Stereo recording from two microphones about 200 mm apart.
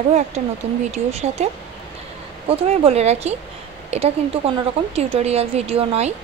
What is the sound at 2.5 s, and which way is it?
A woman's voice, 30° right (ahead or behind).